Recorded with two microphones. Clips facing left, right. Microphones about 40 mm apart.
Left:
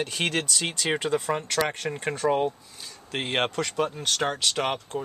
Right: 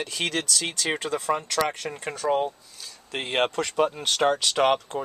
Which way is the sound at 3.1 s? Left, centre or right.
Centre.